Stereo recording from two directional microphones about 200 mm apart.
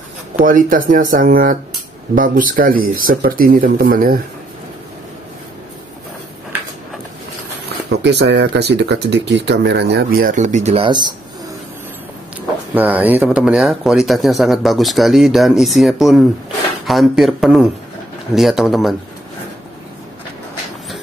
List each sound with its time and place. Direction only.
0.4 s speech: 45° right (ahead or behind)
7.9 s speech: 60° right (ahead or behind); by 11.1 s 25° right (ahead or behind)
12.7 s speech: 10° right (ahead or behind)